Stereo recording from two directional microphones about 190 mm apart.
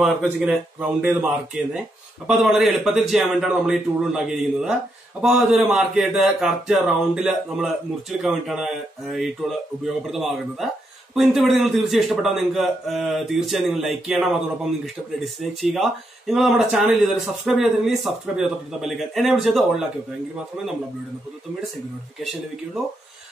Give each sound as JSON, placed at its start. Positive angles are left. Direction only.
{"t": 0.0, "sound": "a man's voice", "side_deg": -5}